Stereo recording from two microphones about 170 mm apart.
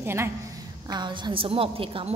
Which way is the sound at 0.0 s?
15° right (ahead or behind).